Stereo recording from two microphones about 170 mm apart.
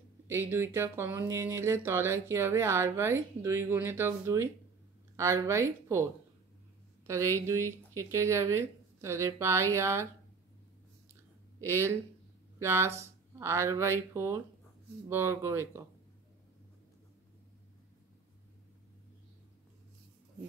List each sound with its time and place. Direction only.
0.3 s speech: 15° right (ahead or behind)
7.1 s speech: 15° right (ahead or behind)
11.6 s speech: 15° right (ahead or behind)